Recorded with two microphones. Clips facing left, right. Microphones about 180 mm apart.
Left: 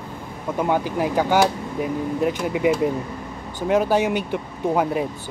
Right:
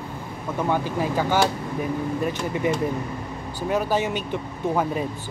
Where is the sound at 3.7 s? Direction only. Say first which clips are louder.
Left 5 dB; 15° left (ahead or behind).